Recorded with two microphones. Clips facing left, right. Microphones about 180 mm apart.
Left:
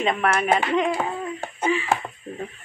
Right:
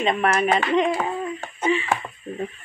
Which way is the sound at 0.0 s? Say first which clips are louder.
Right 1 dB; 25° right (ahead or behind).